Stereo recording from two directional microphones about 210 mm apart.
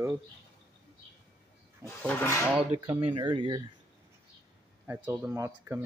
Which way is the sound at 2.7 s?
20° right (ahead or behind).